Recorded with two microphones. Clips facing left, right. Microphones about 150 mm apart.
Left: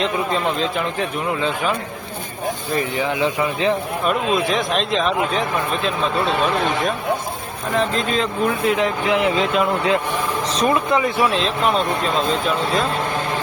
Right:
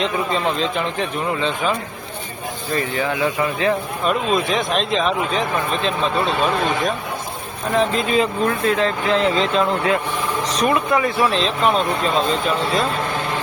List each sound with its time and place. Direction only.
0.0 s speech: centre (ahead or behind)
2.7 s speech: 20° left (ahead or behind)
4.0 s speech: centre (ahead or behind)
7.8 s speech: 5° right (ahead or behind)
8.4 s speech: 15° left (ahead or behind)
11.2 s speech: 5° left (ahead or behind)